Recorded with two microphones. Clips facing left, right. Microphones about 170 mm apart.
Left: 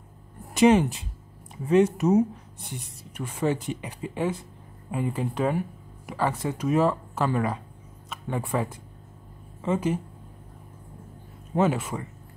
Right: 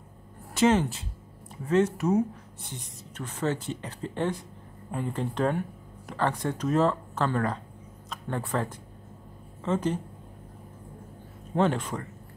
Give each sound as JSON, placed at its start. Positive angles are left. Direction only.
{"t": 0.6, "sound": "a woman's voice", "side_deg": 15}
{"t": 11.5, "sound": "a woman's voice", "side_deg": 5}